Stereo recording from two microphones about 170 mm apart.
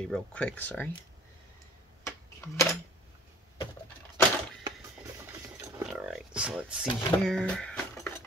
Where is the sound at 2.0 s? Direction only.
15° left (ahead or behind).